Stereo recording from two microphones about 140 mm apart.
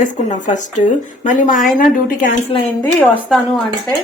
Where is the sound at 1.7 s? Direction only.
65° left (ahead or behind).